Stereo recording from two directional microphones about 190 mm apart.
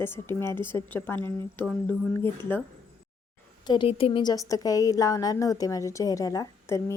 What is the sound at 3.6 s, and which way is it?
A woman's voice, 25° left (ahead or behind).